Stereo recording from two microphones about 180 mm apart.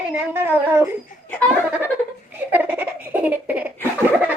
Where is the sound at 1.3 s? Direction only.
5° left (ahead or behind).